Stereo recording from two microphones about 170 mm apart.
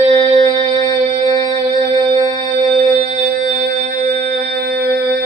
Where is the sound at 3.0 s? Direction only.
50° right (ahead or behind); by 5.0 s 70° right (ahead or behind).